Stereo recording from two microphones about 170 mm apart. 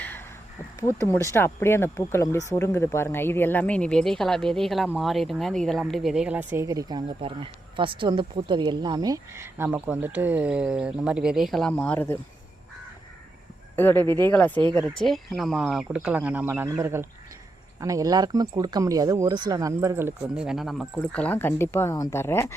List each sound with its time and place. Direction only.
0.8 s speech: 15° left (ahead or behind)
13.7 s speech: 10° left (ahead or behind)